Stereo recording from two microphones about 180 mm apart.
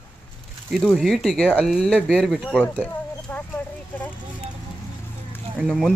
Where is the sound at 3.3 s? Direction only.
10° left (ahead or behind).